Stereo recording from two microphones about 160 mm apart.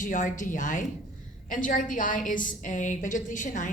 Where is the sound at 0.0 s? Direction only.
55° left (ahead or behind).